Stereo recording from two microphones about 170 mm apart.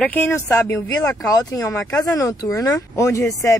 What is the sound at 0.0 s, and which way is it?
Speech, 10° left (ahead or behind).